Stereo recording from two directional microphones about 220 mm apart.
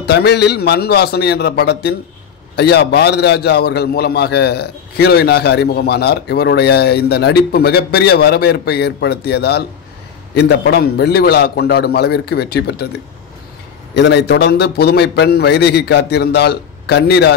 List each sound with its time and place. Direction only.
0.0 s a man's voice: 50° left (ahead or behind)
13.9 s a man's voice: 50° left (ahead or behind)